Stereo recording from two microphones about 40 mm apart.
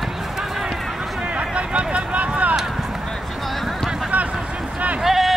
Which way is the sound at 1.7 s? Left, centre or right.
Right.